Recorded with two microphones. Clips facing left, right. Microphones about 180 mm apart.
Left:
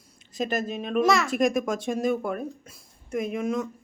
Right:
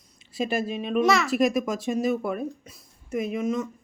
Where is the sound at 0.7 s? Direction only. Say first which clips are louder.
Even; 5° right (ahead or behind).